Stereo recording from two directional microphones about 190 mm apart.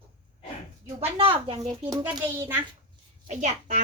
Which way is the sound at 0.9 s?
30° right (ahead or behind).